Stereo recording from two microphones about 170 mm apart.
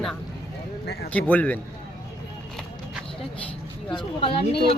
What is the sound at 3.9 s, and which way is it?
Speech, 30° left (ahead or behind).